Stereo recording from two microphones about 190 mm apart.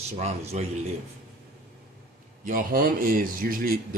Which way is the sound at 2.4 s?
45° right (ahead or behind).